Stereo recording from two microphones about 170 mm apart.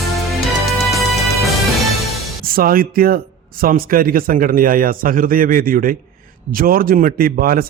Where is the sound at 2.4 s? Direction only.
60° right (ahead or behind).